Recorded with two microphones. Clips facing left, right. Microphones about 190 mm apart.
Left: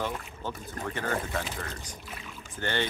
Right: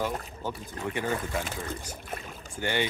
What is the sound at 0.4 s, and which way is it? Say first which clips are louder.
Speech: right 1 dB; 10° right (ahead or behind).